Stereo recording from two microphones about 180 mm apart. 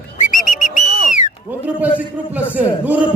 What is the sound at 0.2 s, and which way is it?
Whistle, 45° left (ahead or behind).